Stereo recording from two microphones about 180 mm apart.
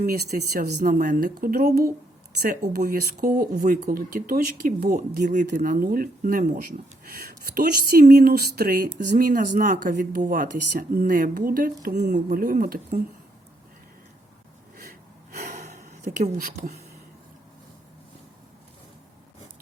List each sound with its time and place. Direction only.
0.5 s speech: 55° right (ahead or behind)
5.2 s speech: 45° right (ahead or behind)
5.5 s speech: 60° right (ahead or behind)
14.8 s gasp: 55° right (ahead or behind)
16.0 s speech: 45° right (ahead or behind)